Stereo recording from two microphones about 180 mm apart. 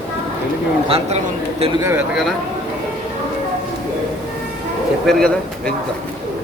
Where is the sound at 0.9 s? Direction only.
35° right (ahead or behind).